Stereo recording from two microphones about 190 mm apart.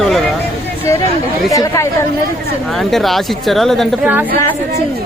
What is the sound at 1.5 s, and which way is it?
Speech, 15° left (ahead or behind).